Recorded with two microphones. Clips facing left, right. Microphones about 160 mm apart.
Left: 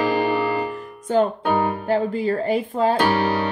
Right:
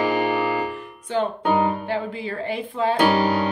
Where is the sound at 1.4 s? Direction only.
20° right (ahead or behind).